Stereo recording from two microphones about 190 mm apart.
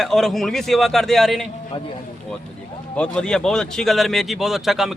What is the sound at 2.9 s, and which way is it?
Speech, 5° left (ahead or behind).